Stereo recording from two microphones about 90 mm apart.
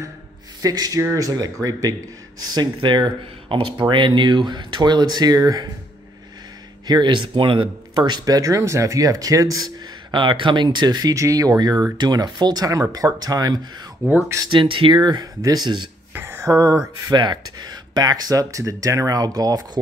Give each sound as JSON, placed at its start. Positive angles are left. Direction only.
{"t": 0.6, "sound": "speech", "side_deg": -45}
{"t": 6.9, "sound": "speech", "side_deg": -55}
{"t": 8.4, "sound": "speech", "side_deg": -35}
{"t": 10.1, "sound": "speech", "side_deg": -65}
{"t": 11.1, "sound": "speech", "side_deg": -40}
{"t": 14.0, "sound": "speech", "side_deg": -25}
{"t": 14.5, "sound": "speech", "side_deg": -70}
{"t": 15.0, "sound": "speech", "side_deg": -50}
{"t": 16.2, "sound": "a sound", "side_deg": -25}
{"t": 17.1, "sound": "speech", "side_deg": -55}